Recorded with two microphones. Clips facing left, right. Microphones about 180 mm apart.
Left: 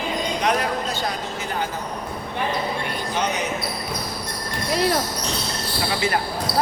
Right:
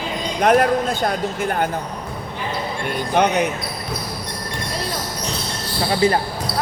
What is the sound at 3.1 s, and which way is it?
Speech, 60° right (ahead or behind).